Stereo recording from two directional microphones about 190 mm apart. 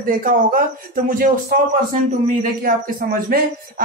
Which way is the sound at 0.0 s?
50° right (ahead or behind).